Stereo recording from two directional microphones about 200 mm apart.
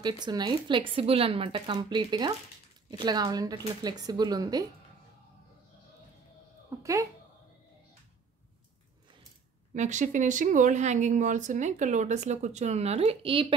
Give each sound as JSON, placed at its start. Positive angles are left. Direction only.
{"t": 0.0, "sound": "speech", "side_deg": -20}
{"t": 6.8, "sound": "speech", "side_deg": -15}
{"t": 9.8, "sound": "speech", "side_deg": -40}